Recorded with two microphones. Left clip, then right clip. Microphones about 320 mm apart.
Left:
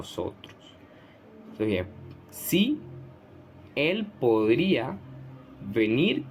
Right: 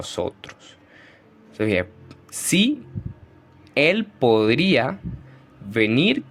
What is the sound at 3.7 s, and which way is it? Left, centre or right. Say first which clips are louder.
Speech: right 8 dB; right.